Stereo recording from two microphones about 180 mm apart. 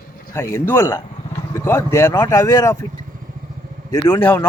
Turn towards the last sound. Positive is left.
turn(degrees=10)  # may be behind; listen again after turning